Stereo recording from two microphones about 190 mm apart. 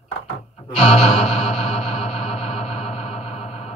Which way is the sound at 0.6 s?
30° left (ahead or behind).